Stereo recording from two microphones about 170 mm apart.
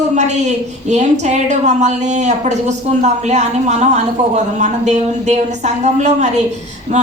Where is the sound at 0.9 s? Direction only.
45° right (ahead or behind).